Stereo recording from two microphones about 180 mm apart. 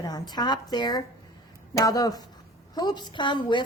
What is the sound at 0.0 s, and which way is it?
A woman's voice, 20° left (ahead or behind).